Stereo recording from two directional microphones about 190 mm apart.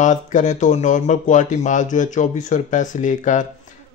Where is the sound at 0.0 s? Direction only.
40° left (ahead or behind).